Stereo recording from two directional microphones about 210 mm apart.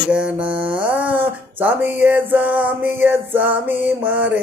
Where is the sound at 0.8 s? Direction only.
5° right (ahead or behind).